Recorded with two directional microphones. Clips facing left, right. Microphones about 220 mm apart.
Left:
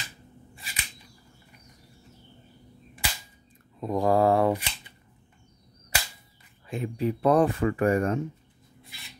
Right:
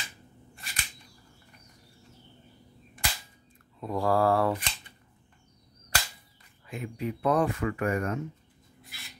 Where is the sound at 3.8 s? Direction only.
20° left (ahead or behind).